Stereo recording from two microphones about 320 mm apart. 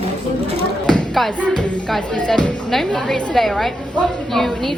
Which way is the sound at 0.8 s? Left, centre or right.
Centre.